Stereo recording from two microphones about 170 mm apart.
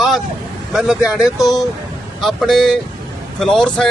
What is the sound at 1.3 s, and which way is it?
Speech, 20° left (ahead or behind).